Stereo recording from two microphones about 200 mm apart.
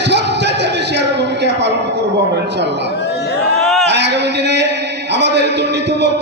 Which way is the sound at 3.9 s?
60° right (ahead or behind).